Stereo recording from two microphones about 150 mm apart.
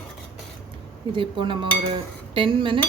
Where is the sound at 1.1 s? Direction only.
30° right (ahead or behind).